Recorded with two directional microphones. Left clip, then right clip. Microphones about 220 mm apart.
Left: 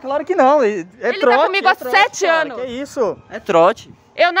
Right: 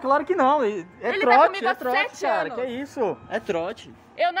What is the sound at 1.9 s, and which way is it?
Speech, 45° left (ahead or behind).